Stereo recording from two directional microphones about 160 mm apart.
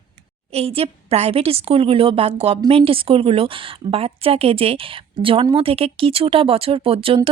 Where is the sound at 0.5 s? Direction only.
40° right (ahead or behind).